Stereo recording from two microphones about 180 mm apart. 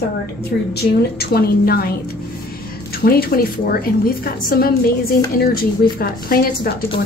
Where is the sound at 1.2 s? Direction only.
60° left (ahead or behind).